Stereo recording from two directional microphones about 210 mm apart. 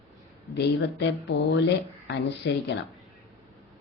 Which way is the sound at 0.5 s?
55° left (ahead or behind).